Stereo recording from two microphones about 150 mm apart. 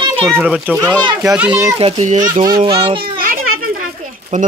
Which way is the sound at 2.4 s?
30° right (ahead or behind).